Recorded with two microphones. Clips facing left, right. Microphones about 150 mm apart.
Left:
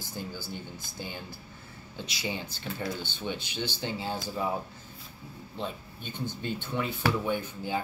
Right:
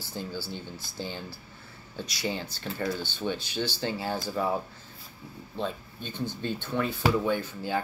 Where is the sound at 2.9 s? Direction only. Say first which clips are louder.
Right 5 dB; 15° left (ahead or behind).